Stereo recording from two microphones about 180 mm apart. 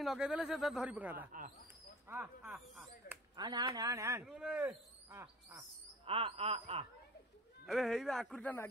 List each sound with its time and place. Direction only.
0.0 s speech: 5° right (ahead or behind)
3.3 s speech: 25° right (ahead or behind)
6.0 s wail: 30° right (ahead or behind)
7.6 s speech: centre (ahead or behind)